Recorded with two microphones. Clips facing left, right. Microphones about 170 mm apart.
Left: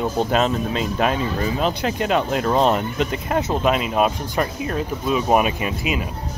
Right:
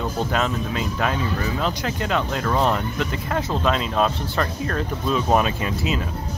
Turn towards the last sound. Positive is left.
turn(degrees=15)  # may be behind; listen again after turning